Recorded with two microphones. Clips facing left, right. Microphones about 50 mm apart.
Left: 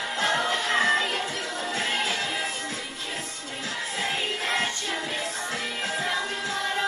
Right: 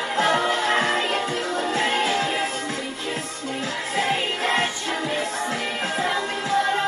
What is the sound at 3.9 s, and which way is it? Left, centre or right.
Music, right.